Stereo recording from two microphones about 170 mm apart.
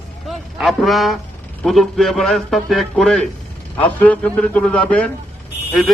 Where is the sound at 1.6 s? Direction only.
Centre (ahead or behind).